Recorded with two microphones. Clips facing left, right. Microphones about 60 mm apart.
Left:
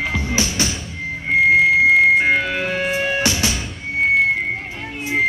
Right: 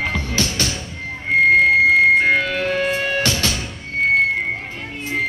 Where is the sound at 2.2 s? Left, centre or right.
Centre.